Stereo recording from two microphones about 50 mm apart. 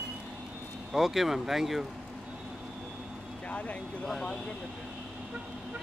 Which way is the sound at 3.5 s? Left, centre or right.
Left.